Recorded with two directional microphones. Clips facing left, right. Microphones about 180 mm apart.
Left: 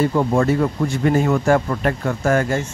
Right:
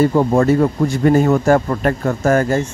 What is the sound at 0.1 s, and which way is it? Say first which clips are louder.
A man's voice: right 4 dB; 40° right (ahead or behind).